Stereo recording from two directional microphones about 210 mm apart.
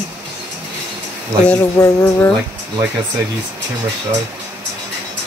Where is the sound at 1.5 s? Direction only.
15° left (ahead or behind).